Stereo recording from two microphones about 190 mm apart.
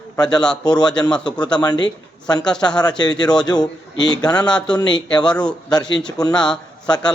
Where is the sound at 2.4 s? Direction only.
5° left (ahead or behind).